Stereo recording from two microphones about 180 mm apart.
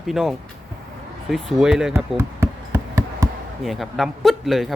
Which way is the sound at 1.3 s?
Centre (ahead or behind).